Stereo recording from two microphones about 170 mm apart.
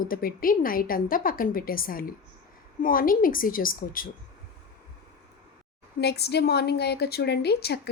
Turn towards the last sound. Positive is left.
turn(degrees=70)  # may be behind; listen again after turning